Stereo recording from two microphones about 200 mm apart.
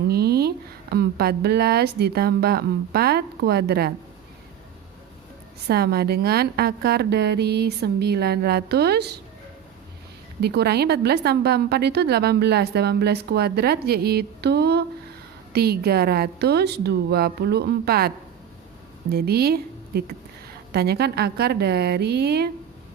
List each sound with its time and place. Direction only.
0.1 s a woman's voice: 50° right (ahead or behind)
5.6 s a woman's voice: 50° right (ahead or behind)
10.4 s a woman's voice: 55° right (ahead or behind)
19.1 s a woman's voice: 50° right (ahead or behind)